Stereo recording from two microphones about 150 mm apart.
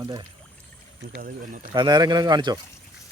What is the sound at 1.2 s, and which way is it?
Speech, 65° right (ahead or behind).